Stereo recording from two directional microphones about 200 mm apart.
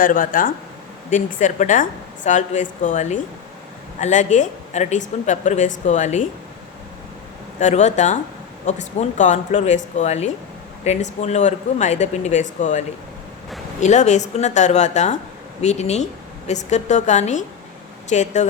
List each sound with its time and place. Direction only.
0.0 s a woman's voice: 45° left (ahead or behind)
7.6 s a woman's voice: 35° left (ahead or behind)